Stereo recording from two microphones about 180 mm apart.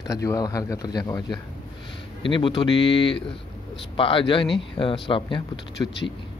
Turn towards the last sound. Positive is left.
turn(degrees=25)  # may be behind; listen again after turning